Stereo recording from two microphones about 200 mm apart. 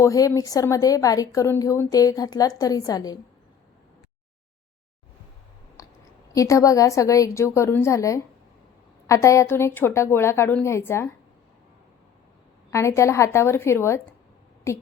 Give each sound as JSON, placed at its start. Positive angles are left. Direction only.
{"t": 0.0, "sound": "a woman's voice", "side_deg": 15}
{"t": 5.8, "sound": "clicking", "side_deg": 15}
{"t": 6.3, "sound": "a woman's voice", "side_deg": 15}
{"t": 12.7, "sound": "a woman's voice", "side_deg": 15}